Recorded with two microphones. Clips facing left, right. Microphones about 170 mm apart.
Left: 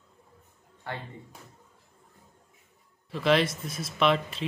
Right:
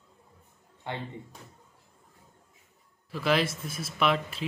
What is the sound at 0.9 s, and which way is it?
Speech, 20° right (ahead or behind).